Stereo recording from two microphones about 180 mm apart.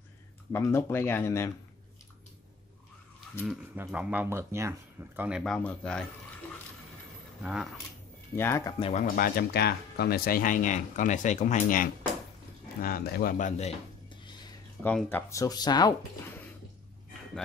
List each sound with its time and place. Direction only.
0.5 s speech: 15° left (ahead or behind)
3.4 s speech: 5° right (ahead or behind)
5.4 s speech: 5° left (ahead or behind)
7.4 s speech: 5° right (ahead or behind)
8.4 s speech: 15° left (ahead or behind)
8.7 s speech: 30° left (ahead or behind)
9.0 s speech: 50° left (ahead or behind)
12.8 s speech: 55° left (ahead or behind); by 13.7 s 40° left (ahead or behind)
14.0 s dishes: 25° left (ahead or behind)
14.8 s speech: 10° left (ahead or behind)